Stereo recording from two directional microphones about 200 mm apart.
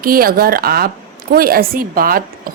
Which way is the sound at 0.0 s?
45° right (ahead or behind).